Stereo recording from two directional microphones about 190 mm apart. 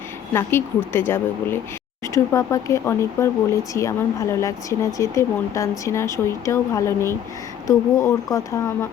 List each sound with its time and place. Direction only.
0.3 s speech: 10° left (ahead or behind)